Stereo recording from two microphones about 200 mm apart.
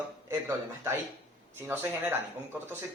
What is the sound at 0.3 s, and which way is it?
Speech, 15° right (ahead or behind).